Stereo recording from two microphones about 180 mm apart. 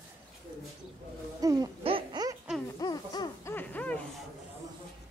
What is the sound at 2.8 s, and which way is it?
Baby cry, 20° left (ahead or behind).